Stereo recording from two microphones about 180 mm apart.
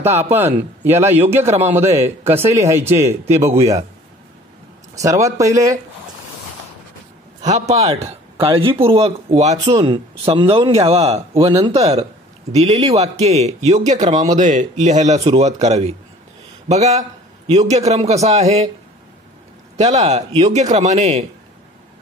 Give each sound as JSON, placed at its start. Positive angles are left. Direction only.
{"t": 0.0, "sound": "a man's voice", "side_deg": -35}
{"t": 0.3, "sound": "a man's voice", "side_deg": -10}
{"t": 4.9, "sound": "a man's voice", "side_deg": -20}
{"t": 7.4, "sound": "speech", "side_deg": -40}
{"t": 9.7, "sound": "speech", "side_deg": -25}
{"t": 19.8, "sound": "speech", "side_deg": -40}